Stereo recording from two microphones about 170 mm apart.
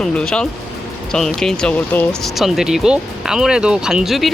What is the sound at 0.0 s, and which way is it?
Speech, 5° left (ahead or behind).